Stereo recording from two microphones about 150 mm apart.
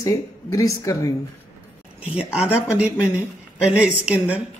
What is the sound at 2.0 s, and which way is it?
Speech, 10° right (ahead or behind).